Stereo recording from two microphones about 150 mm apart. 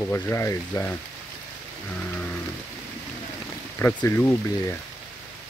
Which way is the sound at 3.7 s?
15° left (ahead or behind).